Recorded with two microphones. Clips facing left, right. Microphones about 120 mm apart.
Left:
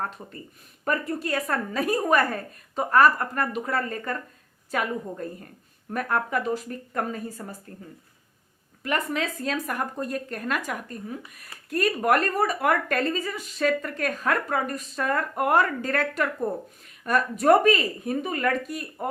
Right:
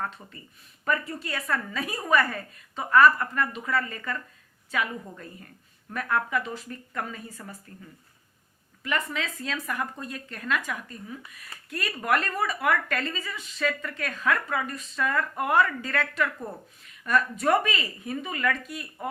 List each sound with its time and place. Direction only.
0.0 s a woman's voice: 40° left (ahead or behind)
8.8 s a woman's voice: 45° left (ahead or behind)